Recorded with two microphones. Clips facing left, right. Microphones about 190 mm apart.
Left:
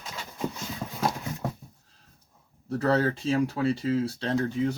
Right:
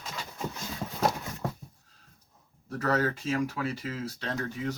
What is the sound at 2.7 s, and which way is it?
Speech, 30° left (ahead or behind).